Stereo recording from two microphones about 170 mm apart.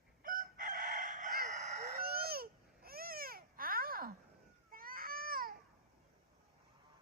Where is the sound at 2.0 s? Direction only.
65° right (ahead or behind).